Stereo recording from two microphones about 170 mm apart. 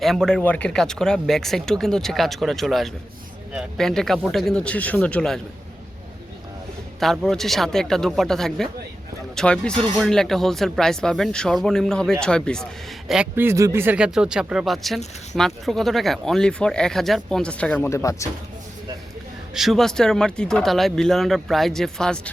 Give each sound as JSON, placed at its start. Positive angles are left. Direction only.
{"t": 0.0, "sound": "speech", "side_deg": 0}
{"t": 7.0, "sound": "speech", "side_deg": 0}
{"t": 13.1, "sound": "speech", "side_deg": -10}
{"t": 17.8, "sound": "speech", "side_deg": 20}
{"t": 19.5, "sound": "speech", "side_deg": 0}